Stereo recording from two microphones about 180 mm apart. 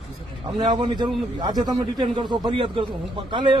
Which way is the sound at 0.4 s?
25° right (ahead or behind).